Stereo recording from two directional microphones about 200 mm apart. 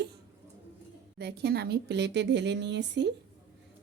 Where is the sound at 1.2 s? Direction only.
55° right (ahead or behind).